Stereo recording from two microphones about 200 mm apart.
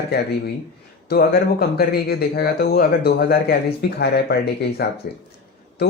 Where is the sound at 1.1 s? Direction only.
50° left (ahead or behind).